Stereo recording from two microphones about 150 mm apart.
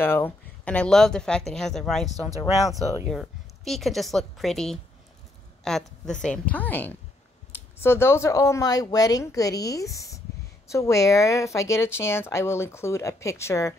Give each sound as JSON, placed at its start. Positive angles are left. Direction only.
{"t": 0.0, "sound": "speech", "side_deg": 15}
{"t": 3.1, "sound": "speech", "side_deg": 0}